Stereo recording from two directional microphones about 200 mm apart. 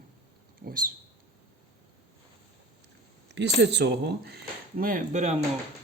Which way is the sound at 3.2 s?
60° right (ahead or behind).